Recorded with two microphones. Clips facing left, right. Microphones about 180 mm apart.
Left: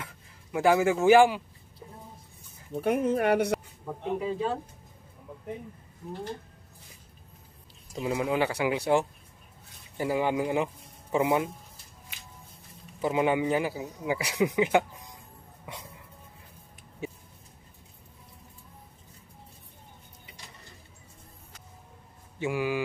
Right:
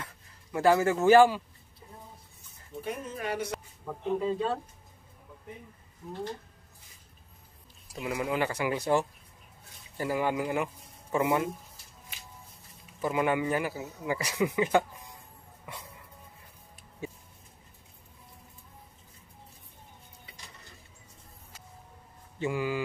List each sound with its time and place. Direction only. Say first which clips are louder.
0.0 s speech: left 1 dB; 10° left (ahead or behind)
2.7 s speech: left 11 dB; 65° left (ahead or behind)
3.8 s a man's voice: right 1 dB; 10° left (ahead or behind)
8.0 s a man's voice: left 3 dB; 25° left (ahead or behind)
13.0 s a man's voice: left 2 dB; 20° left (ahead or behind)
22.4 s a man's voice: left 2 dB; 15° left (ahead or behind)